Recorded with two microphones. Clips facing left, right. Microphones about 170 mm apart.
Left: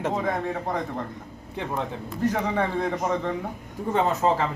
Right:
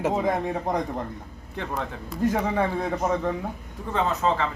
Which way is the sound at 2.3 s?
5° right (ahead or behind).